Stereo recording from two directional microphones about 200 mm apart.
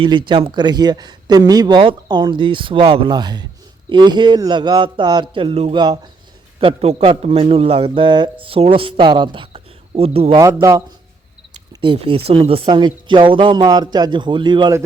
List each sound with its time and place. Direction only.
0.3 s a man's voice: 25° right (ahead or behind)
10.4 s speech: 15° right (ahead or behind)
11.8 s a man's voice: 25° right (ahead or behind)